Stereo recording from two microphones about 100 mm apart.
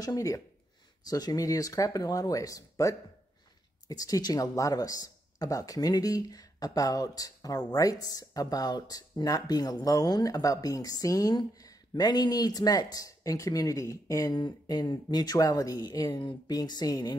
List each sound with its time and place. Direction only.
0.0 s speech: 35° left (ahead or behind)
16.1 s speech: 55° left (ahead or behind)